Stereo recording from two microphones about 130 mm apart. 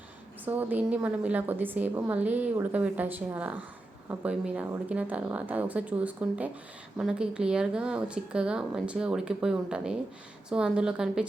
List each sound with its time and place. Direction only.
0.4 s a woman's voice: 15° right (ahead or behind)